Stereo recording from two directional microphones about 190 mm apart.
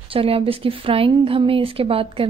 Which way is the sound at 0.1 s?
30° right (ahead or behind).